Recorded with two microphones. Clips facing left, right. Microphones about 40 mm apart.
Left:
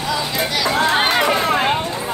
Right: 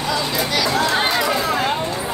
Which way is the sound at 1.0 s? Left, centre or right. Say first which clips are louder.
Left 3 dB; left.